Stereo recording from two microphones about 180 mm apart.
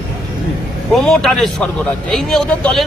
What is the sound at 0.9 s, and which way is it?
Speech, 5° left (ahead or behind).